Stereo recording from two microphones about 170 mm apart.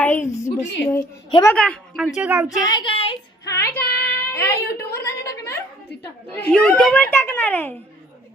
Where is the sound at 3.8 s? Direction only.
65° left (ahead or behind).